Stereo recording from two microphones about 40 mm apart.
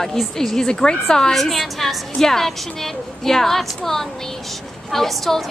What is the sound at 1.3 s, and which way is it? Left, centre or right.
A woman's voice, centre.